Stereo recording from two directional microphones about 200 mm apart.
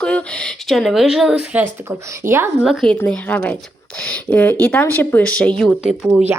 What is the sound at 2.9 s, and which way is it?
A woman's voice, 10° left (ahead or behind).